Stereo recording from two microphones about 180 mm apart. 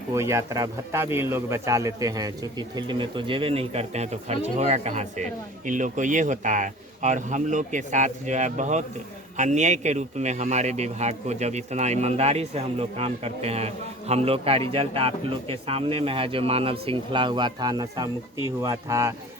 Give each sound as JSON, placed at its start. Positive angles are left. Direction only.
{"t": 0.1, "sound": "a man's voice", "side_deg": -15}